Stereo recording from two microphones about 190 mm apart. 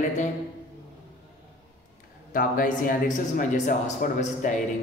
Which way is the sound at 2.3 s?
45° left (ahead or behind).